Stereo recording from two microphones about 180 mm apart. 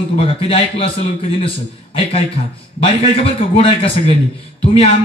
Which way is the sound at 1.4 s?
30° left (ahead or behind).